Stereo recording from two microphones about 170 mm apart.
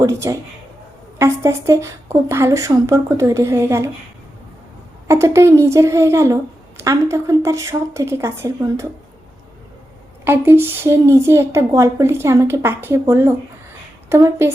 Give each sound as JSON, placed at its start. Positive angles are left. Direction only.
{"t": 0.0, "sound": "speech", "side_deg": -20}
{"t": 5.0, "sound": "speech", "side_deg": -15}
{"t": 10.2, "sound": "speech", "side_deg": -15}